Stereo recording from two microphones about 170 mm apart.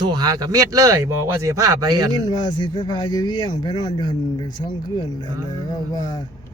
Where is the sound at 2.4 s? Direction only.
25° left (ahead or behind).